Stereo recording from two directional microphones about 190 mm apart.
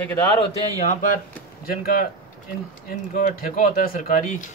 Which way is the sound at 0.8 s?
45° left (ahead or behind).